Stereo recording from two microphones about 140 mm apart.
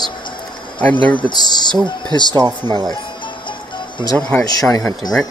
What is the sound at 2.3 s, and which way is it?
Speech, 30° right (ahead or behind).